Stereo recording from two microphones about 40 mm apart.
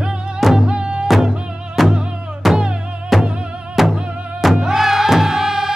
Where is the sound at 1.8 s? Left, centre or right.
Centre.